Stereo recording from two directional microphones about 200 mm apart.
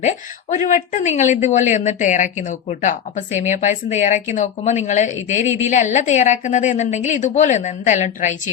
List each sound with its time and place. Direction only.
0.0 s a woman's voice: 40° left (ahead or behind)